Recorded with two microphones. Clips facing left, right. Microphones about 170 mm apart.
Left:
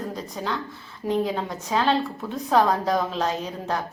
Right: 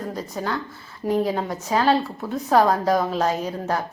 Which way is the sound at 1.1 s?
10° right (ahead or behind).